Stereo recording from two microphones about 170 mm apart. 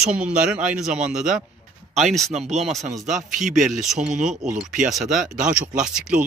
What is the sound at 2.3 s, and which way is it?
Speech, 40° right (ahead or behind).